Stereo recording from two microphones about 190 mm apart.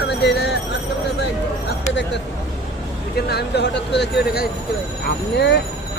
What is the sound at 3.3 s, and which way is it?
Speech, 60° left (ahead or behind).